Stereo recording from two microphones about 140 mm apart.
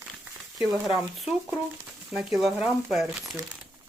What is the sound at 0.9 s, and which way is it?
Speech, centre (ahead or behind).